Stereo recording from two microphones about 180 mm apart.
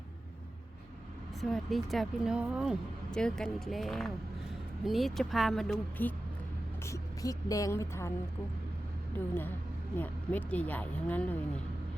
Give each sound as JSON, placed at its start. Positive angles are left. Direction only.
{"t": 1.4, "sound": "a woman's voice", "side_deg": 0}
{"t": 6.8, "sound": "speech", "side_deg": 15}
{"t": 10.0, "sound": "speech", "side_deg": 10}